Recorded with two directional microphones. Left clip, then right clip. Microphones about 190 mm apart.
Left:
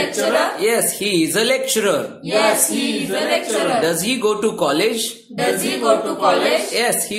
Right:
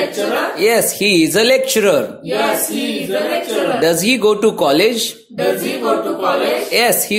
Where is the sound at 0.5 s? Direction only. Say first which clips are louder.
Right 4 dB; 25° right (ahead or behind).